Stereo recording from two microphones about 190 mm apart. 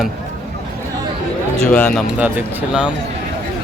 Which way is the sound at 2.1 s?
10° right (ahead or behind).